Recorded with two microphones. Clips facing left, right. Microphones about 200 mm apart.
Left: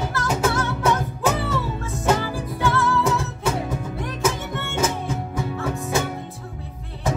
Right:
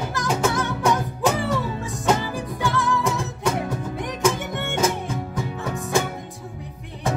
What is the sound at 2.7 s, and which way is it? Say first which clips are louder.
Music: left 1 dB; 15° right (ahead or behind).